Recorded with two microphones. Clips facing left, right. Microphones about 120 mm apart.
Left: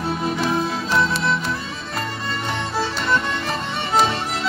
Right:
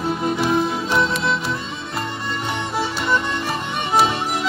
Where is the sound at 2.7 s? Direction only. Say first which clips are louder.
Even; 15° right (ahead or behind).